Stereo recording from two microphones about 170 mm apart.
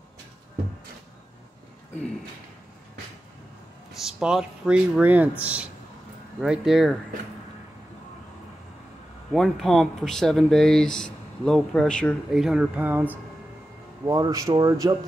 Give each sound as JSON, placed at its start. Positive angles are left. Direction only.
{"t": 4.0, "sound": "speech", "side_deg": -5}
{"t": 9.3, "sound": "speech", "side_deg": 0}